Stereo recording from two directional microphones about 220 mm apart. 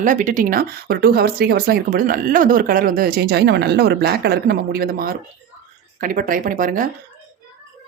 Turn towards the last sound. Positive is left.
turn(degrees=-40)  # may be behind; listen again after turning